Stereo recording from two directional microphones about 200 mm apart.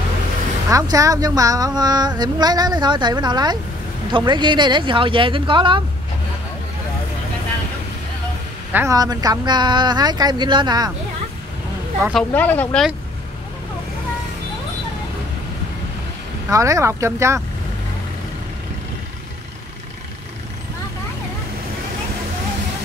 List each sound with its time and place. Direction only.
0.7 s a woman's voice: 15° right (ahead or behind)
8.7 s a woman's voice: 15° right (ahead or behind)
12.1 s speech: 5° left (ahead or behind)
16.4 s speech: 15° right (ahead or behind)